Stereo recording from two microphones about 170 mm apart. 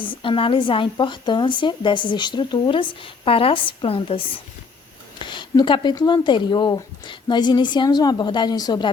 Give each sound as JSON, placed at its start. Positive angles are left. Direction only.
{"t": 0.0, "sound": "a woman's voice", "side_deg": 30}